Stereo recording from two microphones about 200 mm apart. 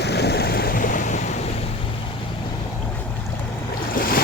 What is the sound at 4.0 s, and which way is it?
Waves, 50° left (ahead or behind).